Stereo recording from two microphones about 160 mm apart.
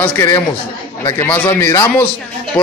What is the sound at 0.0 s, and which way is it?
A man's voice, 20° left (ahead or behind).